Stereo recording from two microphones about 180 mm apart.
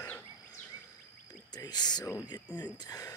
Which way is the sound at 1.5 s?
20° left (ahead or behind).